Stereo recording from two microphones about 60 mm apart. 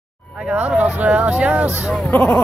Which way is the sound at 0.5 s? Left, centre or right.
Centre.